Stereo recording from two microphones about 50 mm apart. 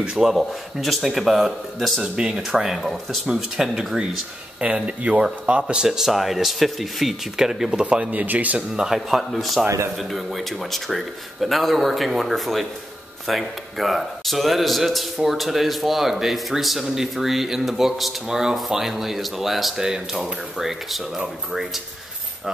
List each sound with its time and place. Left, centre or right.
0.0 s a man's voice: centre
2.1 s speech: centre
5.9 s a man's voice: centre
7.8 s speech: right
8.7 s speech: centre
9.3 s a man's voice: centre